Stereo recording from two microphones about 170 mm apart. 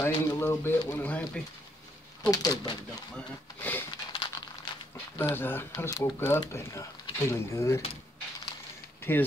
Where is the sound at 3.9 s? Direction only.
25° left (ahead or behind).